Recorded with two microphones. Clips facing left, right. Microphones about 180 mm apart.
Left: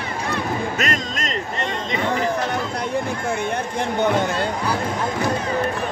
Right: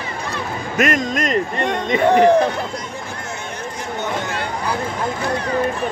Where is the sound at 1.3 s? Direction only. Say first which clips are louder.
Right 6 dB; 55° right (ahead or behind).